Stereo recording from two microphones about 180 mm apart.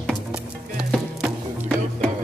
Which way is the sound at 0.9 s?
5° left (ahead or behind).